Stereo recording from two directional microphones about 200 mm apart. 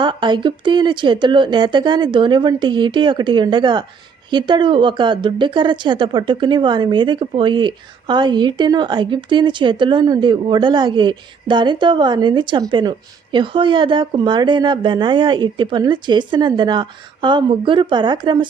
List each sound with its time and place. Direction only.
0.0 s a woman's voice: 25° right (ahead or behind)